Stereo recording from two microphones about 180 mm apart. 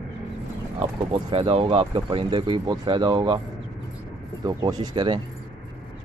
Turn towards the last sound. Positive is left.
turn(degrees=-25)  # may be behind; listen again after turning